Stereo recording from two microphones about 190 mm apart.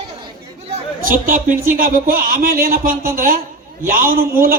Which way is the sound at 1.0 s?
45° right (ahead or behind).